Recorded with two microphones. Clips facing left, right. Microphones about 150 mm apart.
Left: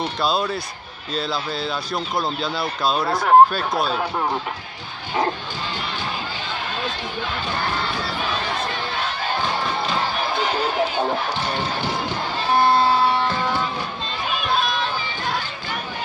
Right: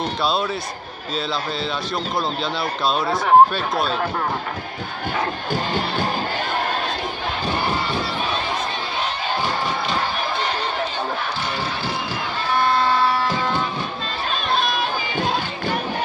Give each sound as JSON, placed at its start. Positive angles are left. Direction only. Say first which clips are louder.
{"t": 0.2, "sound": "speech", "louder": "left 1 dB", "side_deg": 0}
{"t": 5.5, "sound": "music", "louder": "right 6 dB", "side_deg": -50}
{"t": 14.3, "sound": "run", "louder": "even", "side_deg": 5}